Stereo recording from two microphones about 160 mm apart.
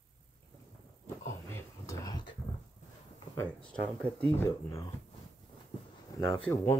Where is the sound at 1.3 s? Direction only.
15° left (ahead or behind).